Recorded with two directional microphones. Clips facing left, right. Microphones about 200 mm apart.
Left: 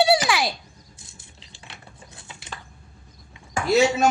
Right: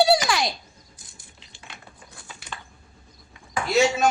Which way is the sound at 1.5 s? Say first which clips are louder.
Even; 30° left (ahead or behind).